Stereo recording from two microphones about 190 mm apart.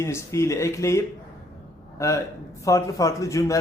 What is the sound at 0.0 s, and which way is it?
Speech, 15° left (ahead or behind).